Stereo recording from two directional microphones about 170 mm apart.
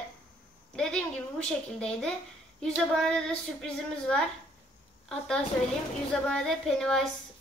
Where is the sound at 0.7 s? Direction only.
5° left (ahead or behind).